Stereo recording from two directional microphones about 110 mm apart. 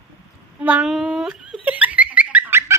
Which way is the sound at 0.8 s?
5° right (ahead or behind).